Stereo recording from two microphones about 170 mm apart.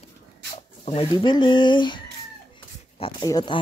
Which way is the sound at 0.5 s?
35° left (ahead or behind).